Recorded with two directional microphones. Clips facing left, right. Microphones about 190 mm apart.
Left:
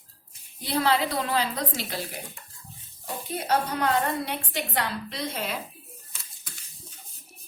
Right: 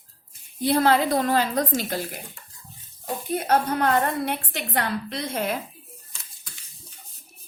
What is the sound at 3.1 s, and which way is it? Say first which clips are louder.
A woman's voice: right 4 dB; 50° right (ahead or behind).